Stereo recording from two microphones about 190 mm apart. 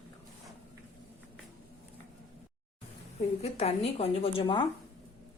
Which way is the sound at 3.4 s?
35° left (ahead or behind).